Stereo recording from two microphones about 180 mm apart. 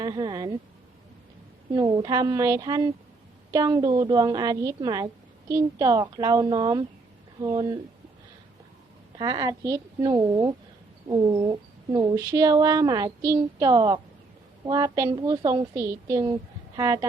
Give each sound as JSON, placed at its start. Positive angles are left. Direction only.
{"t": 0.0, "sound": "speech", "side_deg": -25}
{"t": 1.7, "sound": "speech", "side_deg": -20}
{"t": 9.1, "sound": "a woman's voice", "side_deg": -20}